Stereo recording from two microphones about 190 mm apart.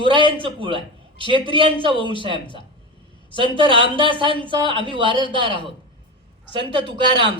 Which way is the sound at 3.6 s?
25° right (ahead or behind).